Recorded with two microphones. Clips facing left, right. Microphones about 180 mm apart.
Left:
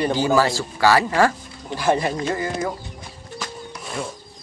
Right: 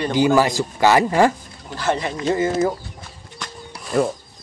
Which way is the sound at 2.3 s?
25° right (ahead or behind).